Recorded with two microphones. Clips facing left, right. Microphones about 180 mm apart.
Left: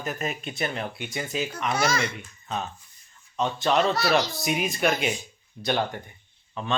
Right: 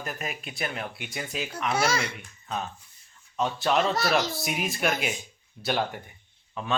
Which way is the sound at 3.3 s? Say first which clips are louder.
Left 2 dB; centre (ahead or behind).